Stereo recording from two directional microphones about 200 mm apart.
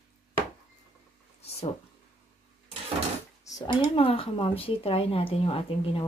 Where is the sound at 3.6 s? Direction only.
25° left (ahead or behind).